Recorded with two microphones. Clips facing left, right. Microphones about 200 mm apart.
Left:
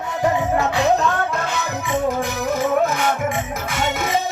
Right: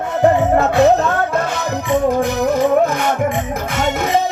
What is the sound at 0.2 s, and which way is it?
Music, 55° right (ahead or behind).